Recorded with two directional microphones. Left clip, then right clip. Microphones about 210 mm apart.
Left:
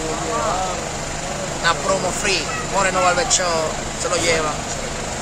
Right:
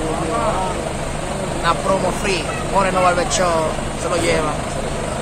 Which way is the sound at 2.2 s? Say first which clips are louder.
Even; 5° left (ahead or behind).